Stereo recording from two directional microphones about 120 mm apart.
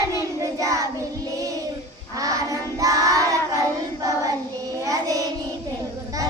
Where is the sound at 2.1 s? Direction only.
30° right (ahead or behind).